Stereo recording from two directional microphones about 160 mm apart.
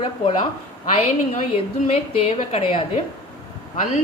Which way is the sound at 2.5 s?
35° left (ahead or behind).